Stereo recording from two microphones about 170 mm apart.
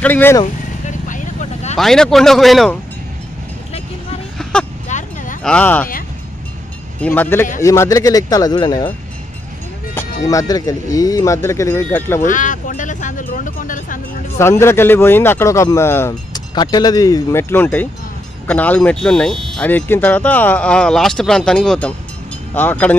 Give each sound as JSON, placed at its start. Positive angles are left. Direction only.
{"t": 0.0, "sound": "speech", "side_deg": 10}
{"t": 0.8, "sound": "vehicle", "side_deg": 50}
{"t": 1.8, "sound": "speech", "side_deg": 0}
{"t": 4.4, "sound": "vehicle", "side_deg": 5}
{"t": 4.8, "sound": "a sound", "side_deg": 50}
{"t": 5.4, "sound": "speech", "side_deg": 5}
{"t": 7.0, "sound": "speech", "side_deg": 10}
{"t": 10.2, "sound": "speech", "side_deg": 20}
{"t": 12.3, "sound": "speech", "side_deg": 50}
{"t": 14.4, "sound": "speech", "side_deg": 15}